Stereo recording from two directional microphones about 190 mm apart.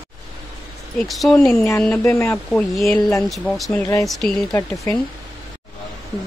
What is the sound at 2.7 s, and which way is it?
Speech, centre (ahead or behind).